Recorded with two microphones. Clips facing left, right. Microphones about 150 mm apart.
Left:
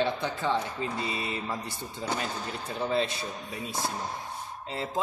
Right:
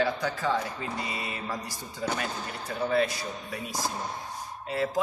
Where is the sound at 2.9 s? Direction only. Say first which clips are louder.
Right 2 dB; 25° left (ahead or behind).